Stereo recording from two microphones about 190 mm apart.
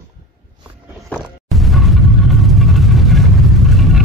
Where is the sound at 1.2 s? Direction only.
Centre (ahead or behind).